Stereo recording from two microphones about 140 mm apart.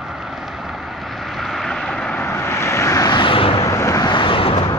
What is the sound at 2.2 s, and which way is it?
Vehicle, 20° left (ahead or behind).